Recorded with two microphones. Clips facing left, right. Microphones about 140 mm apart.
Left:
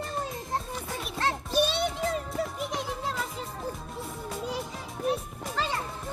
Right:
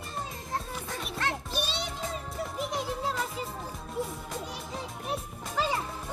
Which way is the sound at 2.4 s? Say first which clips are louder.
Left 1 dB; centre (ahead or behind).